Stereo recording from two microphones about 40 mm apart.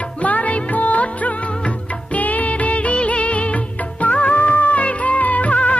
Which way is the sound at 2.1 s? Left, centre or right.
Left.